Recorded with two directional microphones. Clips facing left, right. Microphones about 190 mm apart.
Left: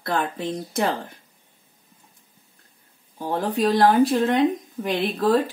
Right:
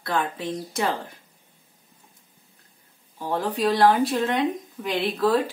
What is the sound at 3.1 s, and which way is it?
Speech, 45° left (ahead or behind).